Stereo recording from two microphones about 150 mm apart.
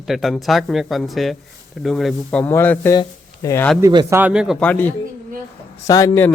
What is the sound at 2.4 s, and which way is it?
A man's voice, 15° left (ahead or behind).